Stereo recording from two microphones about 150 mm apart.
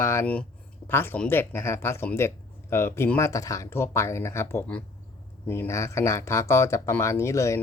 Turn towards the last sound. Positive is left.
turn(degrees=20)  # may be behind; listen again after turning